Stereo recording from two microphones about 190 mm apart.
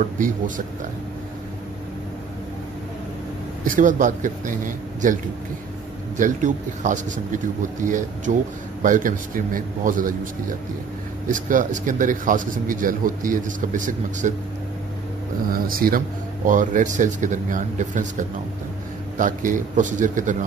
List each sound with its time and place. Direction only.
0.2 s speech: 45° right (ahead or behind)
3.6 s a man's voice: 45° right (ahead or behind)
11.2 s speech: 45° right (ahead or behind)
15.5 s speech: 50° right (ahead or behind)
19.1 s a man's voice: 45° right (ahead or behind)